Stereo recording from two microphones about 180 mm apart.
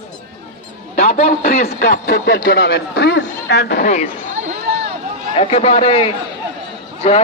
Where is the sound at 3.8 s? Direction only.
45° left (ahead or behind).